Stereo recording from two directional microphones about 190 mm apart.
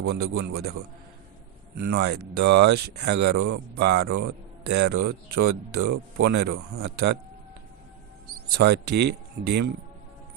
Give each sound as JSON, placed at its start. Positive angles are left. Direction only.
{"t": 0.0, "sound": "speech", "side_deg": -55}
{"t": 1.8, "sound": "speech", "side_deg": -60}
{"t": 8.6, "sound": "speech", "side_deg": -60}